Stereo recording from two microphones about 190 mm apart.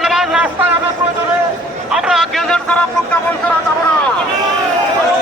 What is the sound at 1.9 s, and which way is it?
Vehicle, 5° right (ahead or behind).